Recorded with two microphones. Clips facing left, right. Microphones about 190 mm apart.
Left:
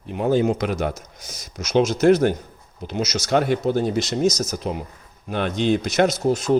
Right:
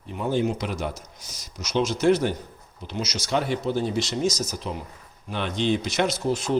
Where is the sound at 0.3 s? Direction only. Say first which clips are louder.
Left 5 dB; 50° left (ahead or behind).